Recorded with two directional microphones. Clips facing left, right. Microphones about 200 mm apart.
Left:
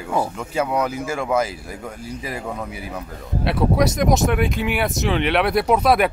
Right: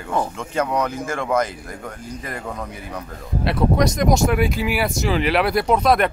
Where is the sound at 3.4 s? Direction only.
5° left (ahead or behind).